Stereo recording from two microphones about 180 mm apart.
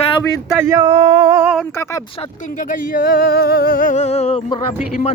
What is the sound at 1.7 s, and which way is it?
Speech, 15° left (ahead or behind).